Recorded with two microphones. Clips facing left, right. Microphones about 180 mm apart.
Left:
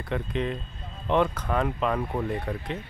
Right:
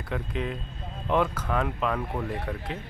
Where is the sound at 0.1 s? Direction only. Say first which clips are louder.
Left 3 dB; 5° right (ahead or behind).